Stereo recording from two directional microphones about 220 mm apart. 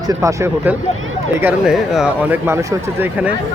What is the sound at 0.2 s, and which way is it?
Speech, 10° right (ahead or behind).